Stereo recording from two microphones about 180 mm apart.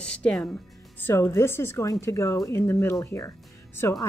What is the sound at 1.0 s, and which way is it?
Speech, 15° left (ahead or behind).